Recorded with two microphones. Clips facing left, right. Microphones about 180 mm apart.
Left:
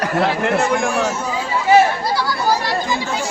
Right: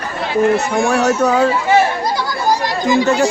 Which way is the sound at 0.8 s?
75° right (ahead or behind).